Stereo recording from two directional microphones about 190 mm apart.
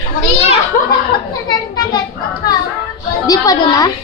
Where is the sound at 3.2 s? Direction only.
20° left (ahead or behind).